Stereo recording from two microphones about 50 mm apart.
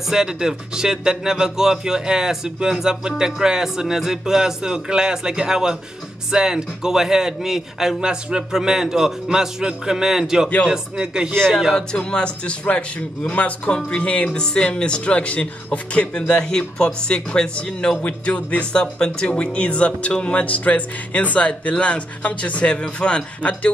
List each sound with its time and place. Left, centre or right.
0.1 s speech: centre
11.7 s speech: centre
13.2 s speech: left
13.8 s speech: left
18.0 s speech: left